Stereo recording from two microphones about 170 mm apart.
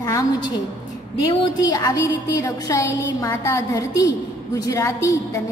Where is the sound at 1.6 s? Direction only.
20° left (ahead or behind).